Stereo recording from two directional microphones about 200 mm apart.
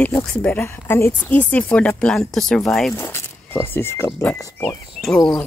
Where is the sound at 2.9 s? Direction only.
10° left (ahead or behind).